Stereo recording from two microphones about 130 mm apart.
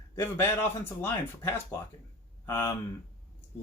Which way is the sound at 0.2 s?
15° left (ahead or behind).